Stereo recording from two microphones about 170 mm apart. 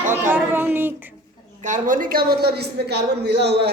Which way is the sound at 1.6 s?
50° right (ahead or behind).